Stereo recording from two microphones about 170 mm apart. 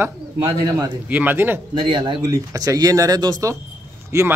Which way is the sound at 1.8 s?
30° right (ahead or behind).